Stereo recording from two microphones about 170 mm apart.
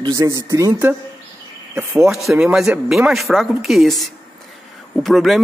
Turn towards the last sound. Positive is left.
turn(degrees=0)  # may be behind; listen again after turning